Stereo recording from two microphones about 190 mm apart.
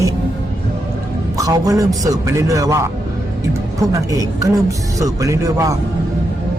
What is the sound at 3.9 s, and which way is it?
Speech, 15° right (ahead or behind).